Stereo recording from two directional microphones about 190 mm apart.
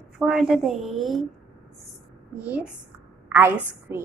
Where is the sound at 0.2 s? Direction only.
Centre (ahead or behind).